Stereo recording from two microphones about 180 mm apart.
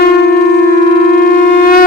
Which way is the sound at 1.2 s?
55° left (ahead or behind).